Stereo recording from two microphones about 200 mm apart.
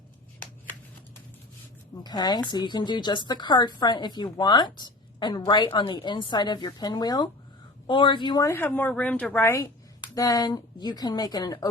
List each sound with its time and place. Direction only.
2.0 s a woman's voice: 20° left (ahead or behind)